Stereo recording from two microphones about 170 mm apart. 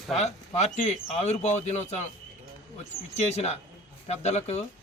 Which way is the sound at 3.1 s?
40° left (ahead or behind).